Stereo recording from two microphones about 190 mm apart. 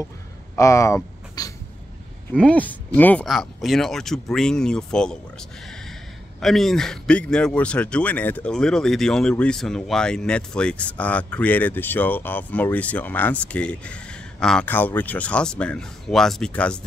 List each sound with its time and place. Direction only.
0.6 s speech: 15° left (ahead or behind)
2.3 s speech: 5° left (ahead or behind)
6.4 s speech: centre (ahead or behind)